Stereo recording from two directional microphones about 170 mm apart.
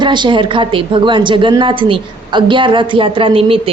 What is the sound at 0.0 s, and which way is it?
A woman's voice, 25° right (ahead or behind).